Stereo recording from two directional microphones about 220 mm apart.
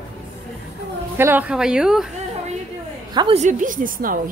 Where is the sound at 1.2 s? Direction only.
10° right (ahead or behind).